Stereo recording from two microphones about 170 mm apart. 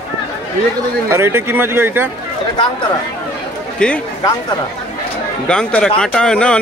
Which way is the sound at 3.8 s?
5° left (ahead or behind).